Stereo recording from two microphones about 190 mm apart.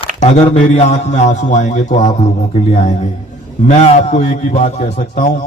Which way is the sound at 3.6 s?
35° left (ahead or behind).